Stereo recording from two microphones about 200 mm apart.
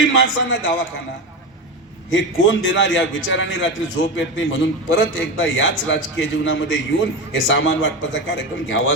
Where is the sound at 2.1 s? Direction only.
70° left (ahead or behind).